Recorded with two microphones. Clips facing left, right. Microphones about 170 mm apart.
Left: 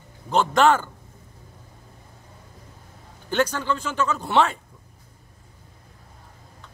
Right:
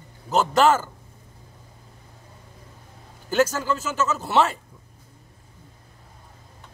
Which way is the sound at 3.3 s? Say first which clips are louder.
Right 2 dB; 5° right (ahead or behind).